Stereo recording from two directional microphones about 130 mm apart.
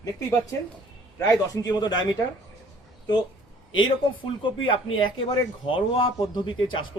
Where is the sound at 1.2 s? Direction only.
30° left (ahead or behind).